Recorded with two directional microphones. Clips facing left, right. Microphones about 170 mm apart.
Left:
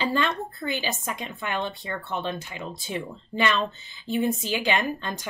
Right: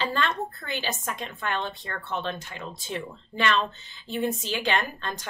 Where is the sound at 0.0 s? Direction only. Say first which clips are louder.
Left 2 dB; 10° left (ahead or behind).